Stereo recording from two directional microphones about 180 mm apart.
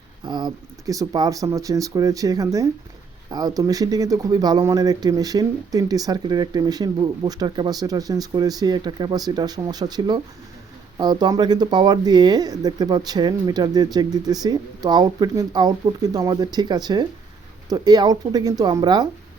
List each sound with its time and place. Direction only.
0.3 s speech: 25° right (ahead or behind)